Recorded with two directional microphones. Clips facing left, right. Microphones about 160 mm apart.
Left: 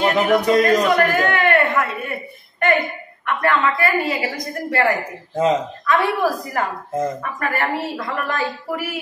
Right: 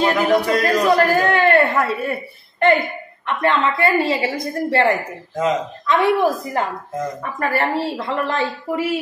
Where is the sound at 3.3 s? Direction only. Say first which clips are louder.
Even; 20° right (ahead or behind).